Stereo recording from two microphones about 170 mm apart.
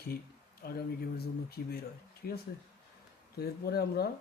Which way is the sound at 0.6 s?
65° left (ahead or behind).